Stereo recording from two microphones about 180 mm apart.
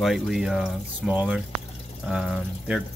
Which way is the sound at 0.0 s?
Centre (ahead or behind).